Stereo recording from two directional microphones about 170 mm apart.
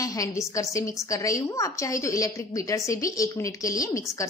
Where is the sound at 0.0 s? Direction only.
20° left (ahead or behind).